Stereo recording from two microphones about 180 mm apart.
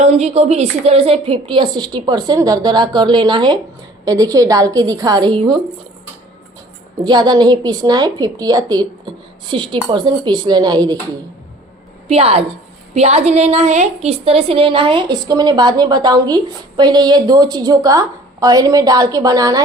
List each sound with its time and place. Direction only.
0.0 s a woman's voice: 40° right (ahead or behind)
7.0 s a woman's voice: 25° right (ahead or behind)
12.0 s a woman's voice: 35° right (ahead or behind)